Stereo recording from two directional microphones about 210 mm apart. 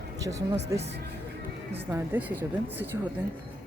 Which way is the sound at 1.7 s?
10° right (ahead or behind).